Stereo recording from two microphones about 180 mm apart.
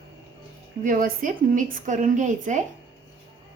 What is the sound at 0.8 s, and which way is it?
A woman's voice, 50° right (ahead or behind).